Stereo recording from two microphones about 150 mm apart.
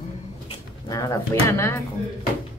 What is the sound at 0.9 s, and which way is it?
Speech, 20° left (ahead or behind).